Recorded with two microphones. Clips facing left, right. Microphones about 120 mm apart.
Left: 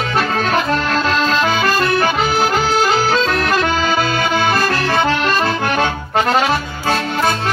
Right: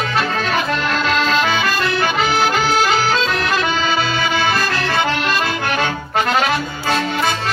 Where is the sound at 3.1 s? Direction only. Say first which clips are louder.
Left 2 dB; 45° left (ahead or behind).